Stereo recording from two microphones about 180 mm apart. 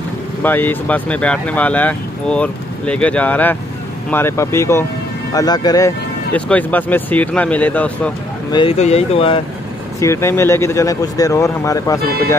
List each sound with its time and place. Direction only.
0.4 s speech: 10° left (ahead or behind)
6.3 s speech: 10° left (ahead or behind)
8.5 s speech: 25° left (ahead or behind)
8.7 s speech: 35° left (ahead or behind)
9.9 s speech: 15° left (ahead or behind)